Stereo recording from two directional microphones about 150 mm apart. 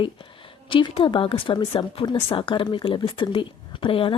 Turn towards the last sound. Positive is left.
turn(degrees=35)  # may be behind; listen again after turning